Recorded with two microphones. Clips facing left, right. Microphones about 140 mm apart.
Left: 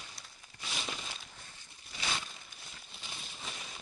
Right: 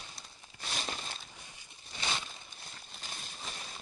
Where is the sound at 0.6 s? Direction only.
40° right (ahead or behind).